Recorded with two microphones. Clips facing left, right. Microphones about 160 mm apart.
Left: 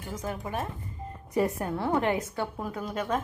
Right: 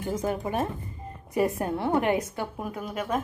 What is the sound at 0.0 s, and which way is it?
A woman's voice, 30° right (ahead or behind).